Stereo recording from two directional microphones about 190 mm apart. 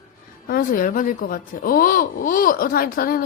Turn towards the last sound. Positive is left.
turn(degrees=50)  # may be behind; listen again after turning